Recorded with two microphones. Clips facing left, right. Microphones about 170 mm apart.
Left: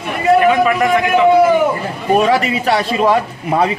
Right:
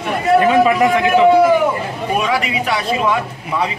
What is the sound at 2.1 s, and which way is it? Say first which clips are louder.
Speech: left 5 dB; 40° left (ahead or behind).